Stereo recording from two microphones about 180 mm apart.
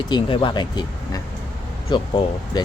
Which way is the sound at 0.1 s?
25° left (ahead or behind).